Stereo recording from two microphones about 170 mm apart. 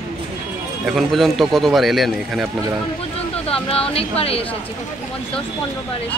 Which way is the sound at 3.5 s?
35° left (ahead or behind).